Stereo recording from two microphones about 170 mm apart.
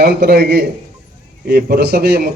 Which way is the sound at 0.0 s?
70° right (ahead or behind).